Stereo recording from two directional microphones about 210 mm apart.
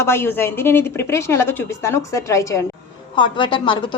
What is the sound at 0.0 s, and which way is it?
A woman's voice, 10° left (ahead or behind).